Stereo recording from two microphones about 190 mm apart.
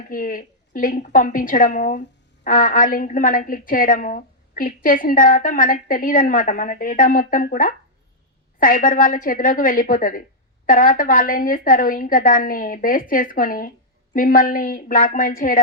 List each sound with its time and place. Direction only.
0.1 s a woman's voice: 45° left (ahead or behind)